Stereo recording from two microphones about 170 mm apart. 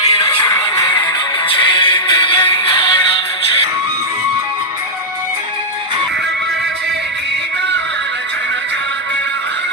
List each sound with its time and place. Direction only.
0.1 s music: 30° left (ahead or behind)